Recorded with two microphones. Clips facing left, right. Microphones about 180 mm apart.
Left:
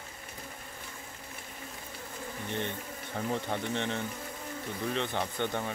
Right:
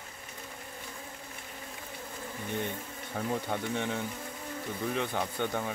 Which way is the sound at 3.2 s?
5° right (ahead or behind).